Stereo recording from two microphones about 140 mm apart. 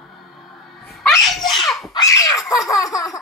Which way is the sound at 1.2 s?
Centre (ahead or behind).